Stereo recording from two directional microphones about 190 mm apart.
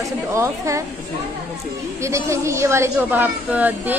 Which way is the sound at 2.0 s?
15° right (ahead or behind).